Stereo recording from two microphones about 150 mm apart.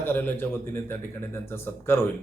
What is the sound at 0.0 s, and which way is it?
A man's voice, 15° left (ahead or behind).